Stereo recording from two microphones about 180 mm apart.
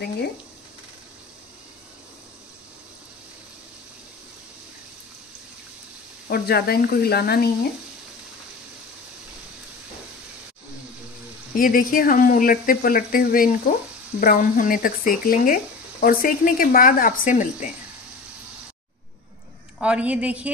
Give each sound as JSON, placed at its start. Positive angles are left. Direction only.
{"t": 6.2, "sound": "speech", "side_deg": 60}
{"t": 11.5, "sound": "speech", "side_deg": 50}
{"t": 19.8, "sound": "a woman's voice", "side_deg": -5}